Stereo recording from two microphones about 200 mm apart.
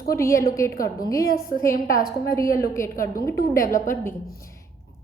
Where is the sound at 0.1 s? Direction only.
15° left (ahead or behind).